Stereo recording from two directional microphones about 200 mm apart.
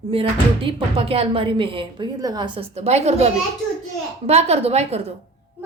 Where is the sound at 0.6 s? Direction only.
25° right (ahead or behind).